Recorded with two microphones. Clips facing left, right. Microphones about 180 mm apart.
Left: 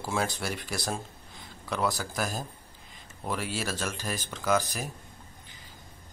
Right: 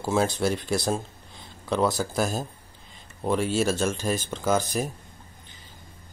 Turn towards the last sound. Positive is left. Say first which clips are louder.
# right 3 dB
turn(degrees=-25)  # may be behind; listen again after turning